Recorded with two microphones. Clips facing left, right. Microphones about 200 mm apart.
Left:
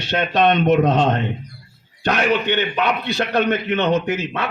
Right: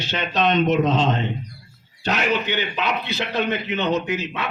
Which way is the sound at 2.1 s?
55° left (ahead or behind).